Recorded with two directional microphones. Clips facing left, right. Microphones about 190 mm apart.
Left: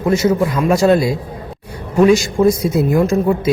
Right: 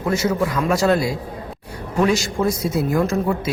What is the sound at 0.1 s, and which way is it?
A man's voice, 20° left (ahead or behind).